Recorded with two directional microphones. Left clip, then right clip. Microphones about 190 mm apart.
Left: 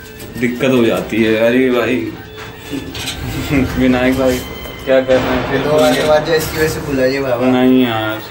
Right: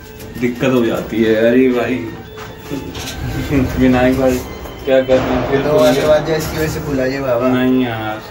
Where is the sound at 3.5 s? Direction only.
30° left (ahead or behind).